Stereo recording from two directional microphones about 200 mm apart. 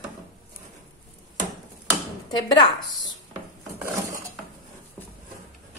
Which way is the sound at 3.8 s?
15° right (ahead or behind).